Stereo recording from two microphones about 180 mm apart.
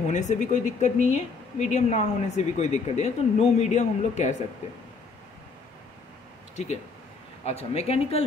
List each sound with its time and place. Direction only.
0.1 s speech: 40° left (ahead or behind)
6.5 s speech: 40° left (ahead or behind)